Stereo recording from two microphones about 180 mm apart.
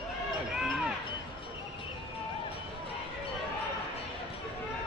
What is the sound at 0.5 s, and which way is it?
Run, 5° right (ahead or behind).